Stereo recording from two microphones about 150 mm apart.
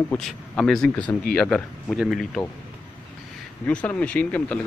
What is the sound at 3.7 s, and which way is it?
Speech, 10° left (ahead or behind).